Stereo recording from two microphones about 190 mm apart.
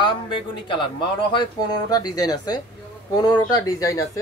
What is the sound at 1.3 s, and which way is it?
A man's voice, 25° left (ahead or behind).